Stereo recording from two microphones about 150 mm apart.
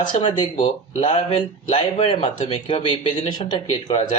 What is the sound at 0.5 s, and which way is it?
Speech, 45° left (ahead or behind).